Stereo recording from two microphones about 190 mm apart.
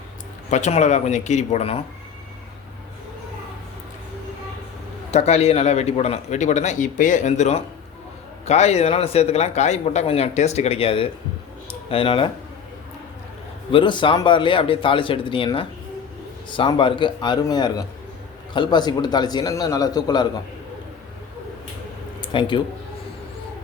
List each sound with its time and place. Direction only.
0.5 s speech: 40° left (ahead or behind)
5.1 s speech: 35° left (ahead or behind)
13.7 s speech: 25° left (ahead or behind)
22.2 s speech: 25° left (ahead or behind)